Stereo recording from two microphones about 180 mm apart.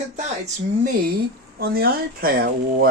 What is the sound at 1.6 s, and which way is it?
Speech, 60° right (ahead or behind).